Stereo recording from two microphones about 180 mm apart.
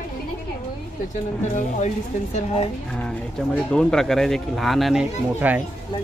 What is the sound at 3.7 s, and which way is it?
Speech, 5° left (ahead or behind).